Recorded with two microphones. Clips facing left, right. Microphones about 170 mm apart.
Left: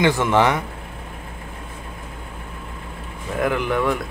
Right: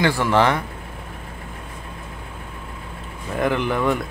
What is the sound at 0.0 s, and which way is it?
Speech, 20° left (ahead or behind).